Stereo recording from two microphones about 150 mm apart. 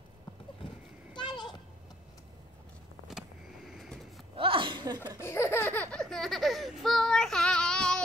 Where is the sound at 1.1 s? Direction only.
30° left (ahead or behind).